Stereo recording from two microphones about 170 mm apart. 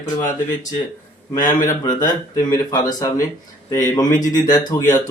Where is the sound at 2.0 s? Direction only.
20° left (ahead or behind).